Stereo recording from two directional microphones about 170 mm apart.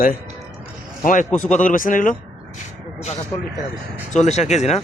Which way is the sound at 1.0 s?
45° left (ahead or behind).